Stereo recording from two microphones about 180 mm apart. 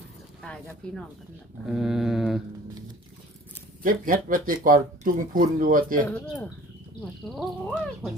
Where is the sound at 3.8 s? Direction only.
50° right (ahead or behind).